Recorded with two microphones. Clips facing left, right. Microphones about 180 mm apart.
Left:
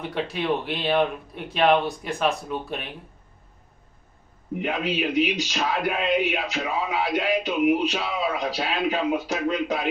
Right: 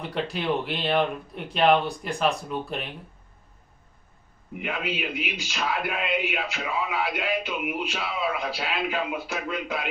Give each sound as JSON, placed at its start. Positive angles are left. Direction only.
{"t": 0.0, "sound": "speech", "side_deg": 0}
{"t": 4.6, "sound": "speech", "side_deg": 40}